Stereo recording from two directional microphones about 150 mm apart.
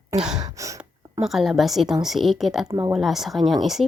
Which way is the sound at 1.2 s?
Centre (ahead or behind).